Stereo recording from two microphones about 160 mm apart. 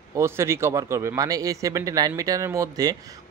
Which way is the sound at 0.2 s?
15° right (ahead or behind).